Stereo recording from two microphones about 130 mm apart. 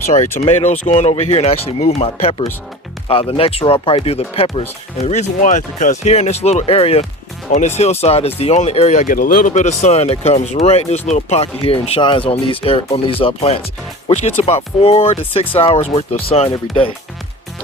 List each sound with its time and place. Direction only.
0.3 s speech: 60° left (ahead or behind); by 16.9 s 45° left (ahead or behind)